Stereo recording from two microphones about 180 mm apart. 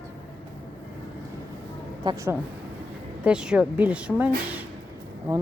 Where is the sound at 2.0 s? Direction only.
25° right (ahead or behind).